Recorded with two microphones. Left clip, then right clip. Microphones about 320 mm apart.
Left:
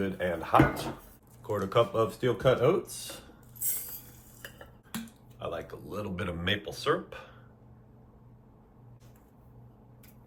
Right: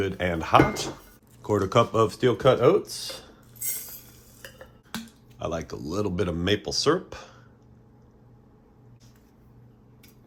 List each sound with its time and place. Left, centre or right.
0.0 s speech: right
5.4 s speech: centre